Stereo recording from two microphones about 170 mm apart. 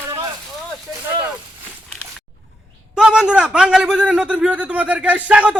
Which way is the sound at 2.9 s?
5° right (ahead or behind).